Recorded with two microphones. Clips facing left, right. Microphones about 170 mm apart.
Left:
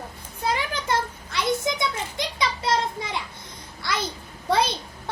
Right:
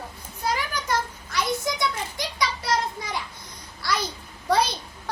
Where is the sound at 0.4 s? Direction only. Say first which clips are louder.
Left 1 dB; 25° left (ahead or behind).